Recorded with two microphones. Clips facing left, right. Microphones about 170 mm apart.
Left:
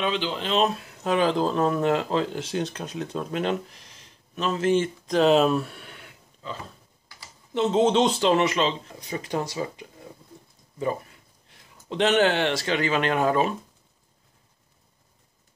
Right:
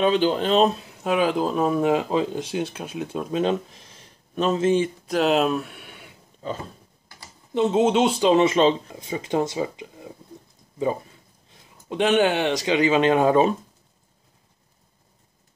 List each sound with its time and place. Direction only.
0.0 s speech: 45° right (ahead or behind)
0.8 s speech: 10° right (ahead or behind)
4.4 s speech: 30° right (ahead or behind)
4.6 s speech: 10° right (ahead or behind)
5.9 s a sound: 15° right (ahead or behind)
7.5 s speech: 10° right (ahead or behind)
11.9 s speech: 10° right (ahead or behind)